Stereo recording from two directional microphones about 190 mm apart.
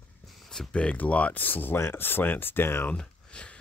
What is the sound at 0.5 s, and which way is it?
Speech, 5° left (ahead or behind).